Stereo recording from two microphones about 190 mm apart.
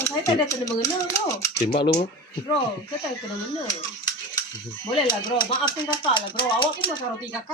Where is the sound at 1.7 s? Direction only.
30° left (ahead or behind).